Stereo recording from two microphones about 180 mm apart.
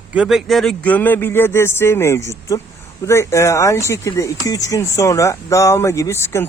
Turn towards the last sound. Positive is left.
turn(degrees=15)  # may be behind; listen again after turning